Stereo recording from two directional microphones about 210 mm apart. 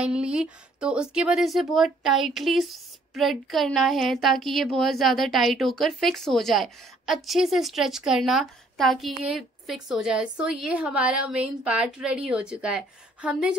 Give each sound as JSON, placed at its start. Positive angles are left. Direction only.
{"t": 0.0, "sound": "speech", "side_deg": -5}